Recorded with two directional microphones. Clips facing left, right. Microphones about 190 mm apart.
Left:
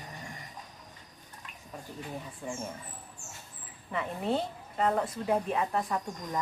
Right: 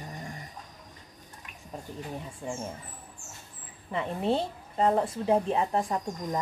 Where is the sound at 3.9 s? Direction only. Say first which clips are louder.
Right 3 dB; 30° right (ahead or behind).